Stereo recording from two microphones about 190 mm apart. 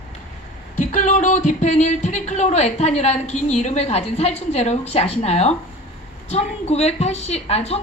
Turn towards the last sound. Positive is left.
turn(degrees=30)  # may be behind; listen again after turning